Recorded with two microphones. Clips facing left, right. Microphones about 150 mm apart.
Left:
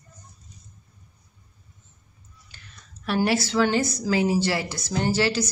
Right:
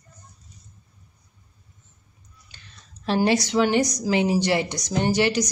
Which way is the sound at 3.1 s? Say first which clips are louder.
Right 2 dB; 20° right (ahead or behind).